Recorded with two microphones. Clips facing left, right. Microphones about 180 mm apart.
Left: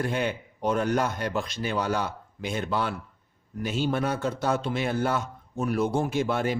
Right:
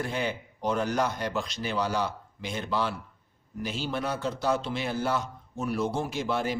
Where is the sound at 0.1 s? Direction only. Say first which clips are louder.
Left 3 dB; 55° left (ahead or behind).